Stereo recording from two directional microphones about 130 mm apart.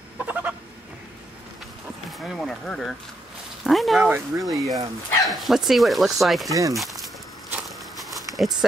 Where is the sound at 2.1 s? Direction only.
Centre (ahead or behind).